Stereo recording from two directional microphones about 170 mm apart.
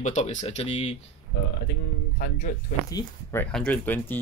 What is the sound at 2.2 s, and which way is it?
Speech, 50° left (ahead or behind).